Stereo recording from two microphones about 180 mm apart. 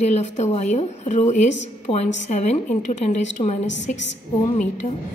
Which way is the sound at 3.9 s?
45° left (ahead or behind).